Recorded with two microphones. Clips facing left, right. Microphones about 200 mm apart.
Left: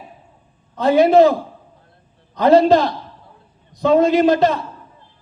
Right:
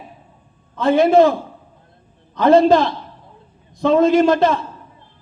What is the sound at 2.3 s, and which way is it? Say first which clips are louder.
A man's voice: even; 50° right (ahead or behind).